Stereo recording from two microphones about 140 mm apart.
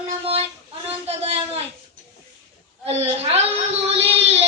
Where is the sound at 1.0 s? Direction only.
45° right (ahead or behind).